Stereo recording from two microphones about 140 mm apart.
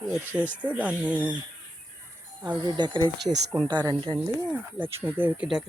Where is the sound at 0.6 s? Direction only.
10° right (ahead or behind).